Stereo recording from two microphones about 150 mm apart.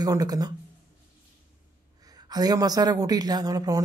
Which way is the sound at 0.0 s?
25° right (ahead or behind).